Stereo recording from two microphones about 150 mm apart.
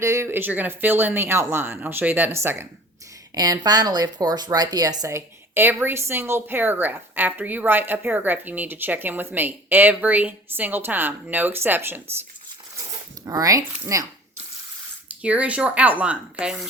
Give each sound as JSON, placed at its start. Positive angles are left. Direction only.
{"t": 0.0, "sound": "speech", "side_deg": -20}
{"t": 3.3, "sound": "speech", "side_deg": -25}
{"t": 13.2, "sound": "speech", "side_deg": -25}
{"t": 15.2, "sound": "speech", "side_deg": -10}